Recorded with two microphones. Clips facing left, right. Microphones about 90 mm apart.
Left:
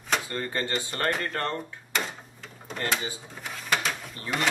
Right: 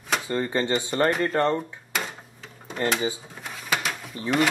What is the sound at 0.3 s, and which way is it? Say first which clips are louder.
Speech: right 6 dB; 20° right (ahead or behind).